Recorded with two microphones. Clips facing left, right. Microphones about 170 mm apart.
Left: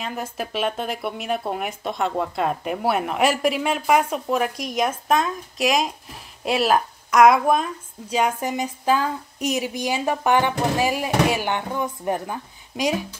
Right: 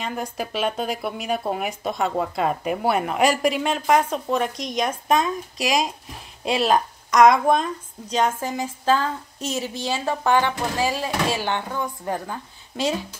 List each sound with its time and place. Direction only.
0.0 s a woman's voice: 5° left (ahead or behind)